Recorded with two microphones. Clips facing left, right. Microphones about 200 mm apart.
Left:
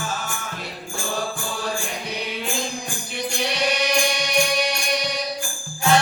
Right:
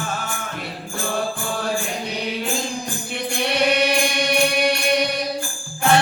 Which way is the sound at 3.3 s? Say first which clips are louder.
Right 5 dB; 55° right (ahead or behind).